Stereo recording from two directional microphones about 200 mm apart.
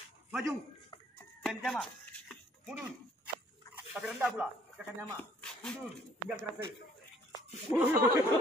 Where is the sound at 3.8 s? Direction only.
5° right (ahead or behind).